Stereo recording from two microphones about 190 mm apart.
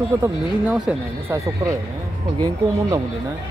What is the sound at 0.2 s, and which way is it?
Speech, 10° right (ahead or behind).